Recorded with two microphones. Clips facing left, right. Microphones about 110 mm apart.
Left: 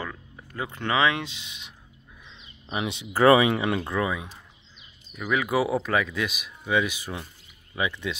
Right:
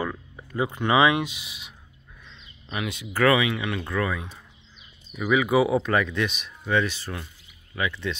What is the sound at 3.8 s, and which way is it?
Speech, 15° left (ahead or behind).